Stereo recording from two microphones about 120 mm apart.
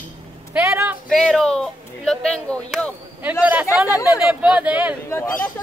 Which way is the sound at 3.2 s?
15° right (ahead or behind).